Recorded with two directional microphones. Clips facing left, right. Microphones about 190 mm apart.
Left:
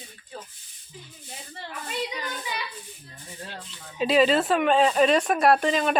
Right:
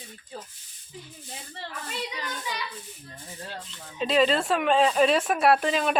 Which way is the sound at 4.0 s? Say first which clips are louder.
Left 2 dB; 5° left (ahead or behind).